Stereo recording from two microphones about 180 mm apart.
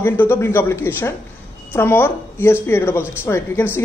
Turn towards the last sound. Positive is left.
turn(degrees=15)  # may be behind; listen again after turning